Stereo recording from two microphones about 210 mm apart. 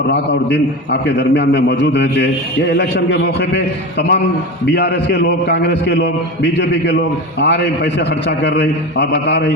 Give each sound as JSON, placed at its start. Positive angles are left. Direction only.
{"t": 0.1, "sound": "a man's voice", "side_deg": 55}